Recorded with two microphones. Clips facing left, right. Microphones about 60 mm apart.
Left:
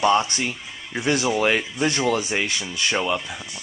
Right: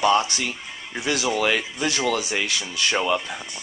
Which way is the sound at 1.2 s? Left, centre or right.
Centre.